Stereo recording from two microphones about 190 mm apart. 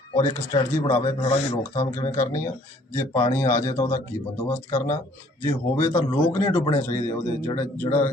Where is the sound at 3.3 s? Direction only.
15° left (ahead or behind).